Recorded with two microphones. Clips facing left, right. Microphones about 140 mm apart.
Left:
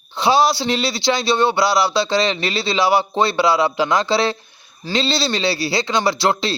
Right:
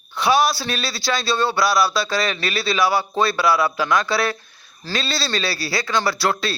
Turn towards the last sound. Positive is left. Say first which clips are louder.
# left 3 dB
turn(degrees=25)  # may be behind; listen again after turning